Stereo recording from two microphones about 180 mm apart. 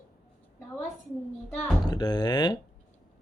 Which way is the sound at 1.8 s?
20° left (ahead or behind).